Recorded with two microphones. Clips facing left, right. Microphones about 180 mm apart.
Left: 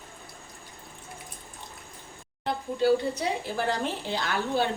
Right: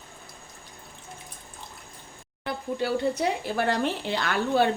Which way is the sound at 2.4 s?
60° right (ahead or behind).